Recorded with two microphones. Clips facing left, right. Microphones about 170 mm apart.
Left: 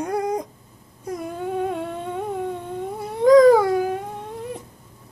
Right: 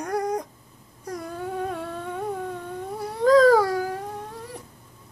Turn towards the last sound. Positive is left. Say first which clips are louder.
# left 4 dB
turn(degrees=20)  # may be behind; listen again after turning